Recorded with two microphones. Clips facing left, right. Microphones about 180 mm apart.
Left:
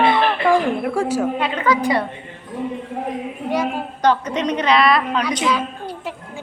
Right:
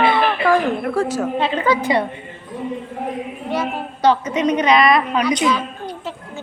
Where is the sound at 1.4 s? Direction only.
30° right (ahead or behind).